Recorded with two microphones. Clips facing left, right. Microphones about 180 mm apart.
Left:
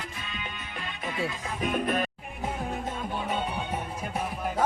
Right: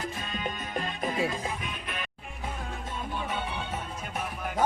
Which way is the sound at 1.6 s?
45° left (ahead or behind).